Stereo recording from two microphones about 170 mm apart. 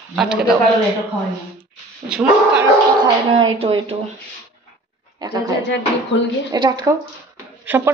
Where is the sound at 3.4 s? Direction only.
30° right (ahead or behind).